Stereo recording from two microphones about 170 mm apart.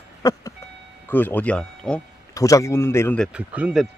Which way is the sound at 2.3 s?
20° left (ahead or behind).